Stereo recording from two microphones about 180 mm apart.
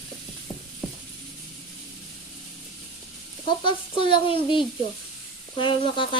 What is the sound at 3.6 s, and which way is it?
Speech, 25° left (ahead or behind).